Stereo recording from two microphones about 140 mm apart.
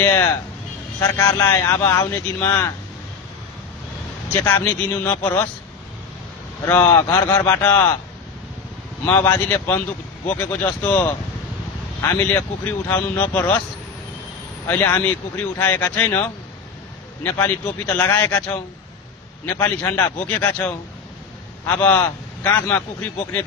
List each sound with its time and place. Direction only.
0.0 s speech: 15° left (ahead or behind)
4.3 s speech: 15° left (ahead or behind)
6.6 s speech: 15° left (ahead or behind)
9.0 s speech: 15° left (ahead or behind)
12.3 s speech: 15° left (ahead or behind)
14.7 s speech: 15° left (ahead or behind)
21.7 s speech: 15° left (ahead or behind)